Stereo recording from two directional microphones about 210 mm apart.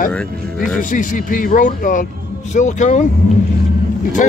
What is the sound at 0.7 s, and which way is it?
Speech, 40° left (ahead or behind).